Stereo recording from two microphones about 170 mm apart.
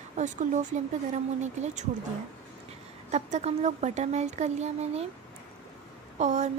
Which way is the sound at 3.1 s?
40° right (ahead or behind).